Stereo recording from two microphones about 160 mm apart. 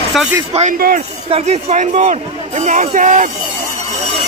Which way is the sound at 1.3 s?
45° right (ahead or behind).